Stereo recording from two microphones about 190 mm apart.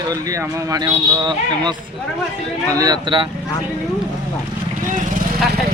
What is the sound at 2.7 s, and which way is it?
Speech, 20° right (ahead or behind).